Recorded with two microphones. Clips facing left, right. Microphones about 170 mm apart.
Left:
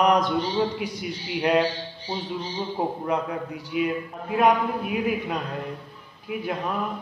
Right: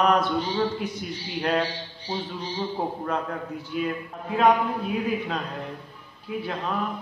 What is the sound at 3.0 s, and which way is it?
A man's voice, 10° left (ahead or behind).